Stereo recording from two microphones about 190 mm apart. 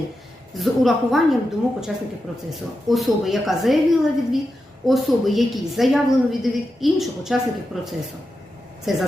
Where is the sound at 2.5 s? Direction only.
Centre (ahead or behind).